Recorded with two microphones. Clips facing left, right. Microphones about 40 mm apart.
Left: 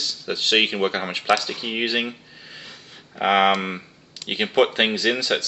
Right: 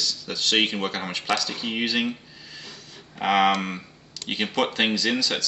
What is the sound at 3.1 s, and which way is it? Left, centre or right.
Speech, left.